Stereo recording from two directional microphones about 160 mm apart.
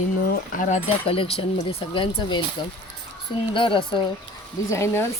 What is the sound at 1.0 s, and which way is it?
Speech, 35° left (ahead or behind).